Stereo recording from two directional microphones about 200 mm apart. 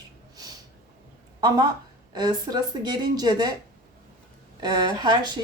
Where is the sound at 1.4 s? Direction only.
20° right (ahead or behind).